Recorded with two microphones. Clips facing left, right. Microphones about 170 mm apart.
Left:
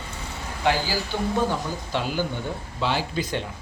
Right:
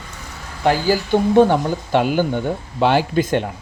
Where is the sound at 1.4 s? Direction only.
65° right (ahead or behind).